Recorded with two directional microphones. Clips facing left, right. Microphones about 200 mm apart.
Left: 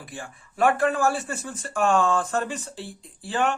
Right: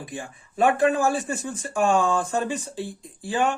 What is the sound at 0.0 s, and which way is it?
Speech, 15° right (ahead or behind).